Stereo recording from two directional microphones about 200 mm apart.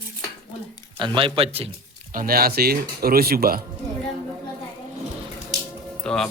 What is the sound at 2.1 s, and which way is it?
Speech, 50° right (ahead or behind).